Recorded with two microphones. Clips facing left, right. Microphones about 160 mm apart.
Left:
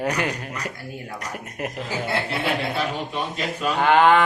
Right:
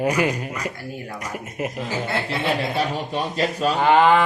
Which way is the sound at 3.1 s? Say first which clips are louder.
Right 4 dB; 35° right (ahead or behind).